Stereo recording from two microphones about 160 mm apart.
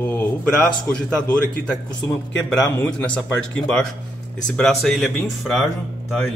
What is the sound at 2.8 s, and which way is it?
Speech, 5° left (ahead or behind).